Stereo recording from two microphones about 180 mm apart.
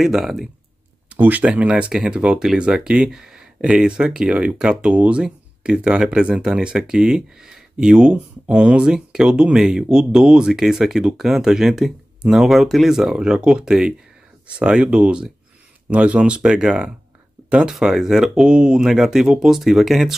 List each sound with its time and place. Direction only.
0.0 s speech: centre (ahead or behind)